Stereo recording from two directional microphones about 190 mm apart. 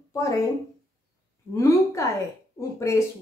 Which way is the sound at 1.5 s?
15° left (ahead or behind).